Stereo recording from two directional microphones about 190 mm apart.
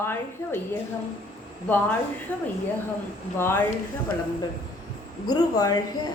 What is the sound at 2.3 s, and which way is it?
A woman's voice, 10° left (ahead or behind).